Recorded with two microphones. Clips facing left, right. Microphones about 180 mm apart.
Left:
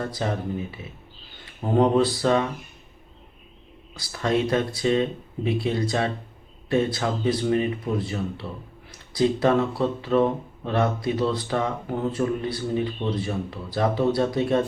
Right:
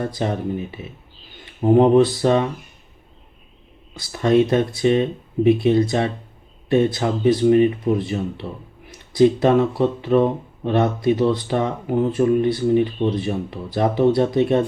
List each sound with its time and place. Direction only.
0.0 s speech: 20° right (ahead or behind)
4.0 s speech: 20° right (ahead or behind)